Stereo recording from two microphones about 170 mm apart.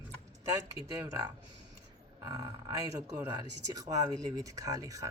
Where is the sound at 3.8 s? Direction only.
20° right (ahead or behind).